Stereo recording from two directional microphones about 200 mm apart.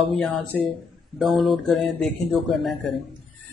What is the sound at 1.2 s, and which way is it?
Speech, centre (ahead or behind).